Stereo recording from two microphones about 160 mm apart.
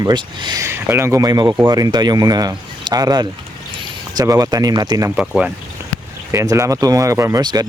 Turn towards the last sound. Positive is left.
turn(degrees=-25)  # may be behind; listen again after turning